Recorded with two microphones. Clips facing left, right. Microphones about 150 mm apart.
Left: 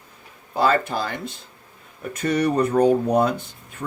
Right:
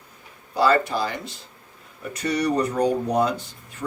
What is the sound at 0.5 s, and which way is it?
Speech, 50° left (ahead or behind).